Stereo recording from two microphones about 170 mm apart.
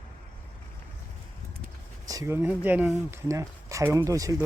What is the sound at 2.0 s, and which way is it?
Speech, 20° right (ahead or behind).